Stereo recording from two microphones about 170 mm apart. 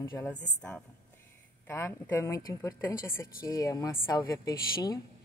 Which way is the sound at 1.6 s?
15° left (ahead or behind).